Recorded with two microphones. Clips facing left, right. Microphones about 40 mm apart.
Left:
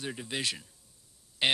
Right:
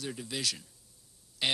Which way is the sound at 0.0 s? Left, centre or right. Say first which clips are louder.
Left 1 dB; left.